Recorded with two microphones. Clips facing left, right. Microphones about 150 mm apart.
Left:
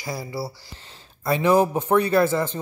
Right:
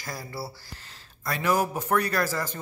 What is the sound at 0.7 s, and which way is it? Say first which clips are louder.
A man's voice: left 3 dB; 30° left (ahead or behind).